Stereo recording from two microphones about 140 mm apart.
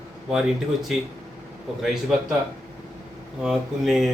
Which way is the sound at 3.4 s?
5° right (ahead or behind).